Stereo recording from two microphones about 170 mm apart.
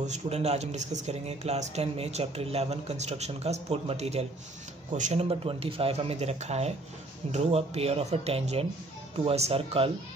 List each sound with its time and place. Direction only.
0.0 s speech: 40° right (ahead or behind)